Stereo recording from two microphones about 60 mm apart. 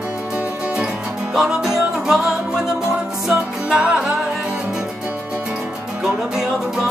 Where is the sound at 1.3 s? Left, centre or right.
Centre.